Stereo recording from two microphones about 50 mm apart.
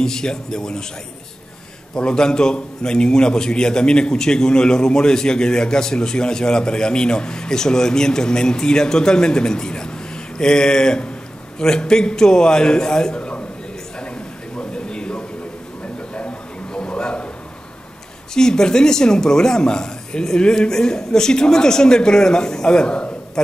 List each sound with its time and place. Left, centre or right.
0.0 s a man's voice: centre
2.0 s a man's voice: centre
13.9 s a sound: centre
18.3 s a man's voice: centre